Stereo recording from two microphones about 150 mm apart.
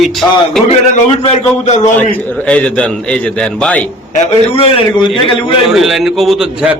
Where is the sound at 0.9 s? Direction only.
45° left (ahead or behind).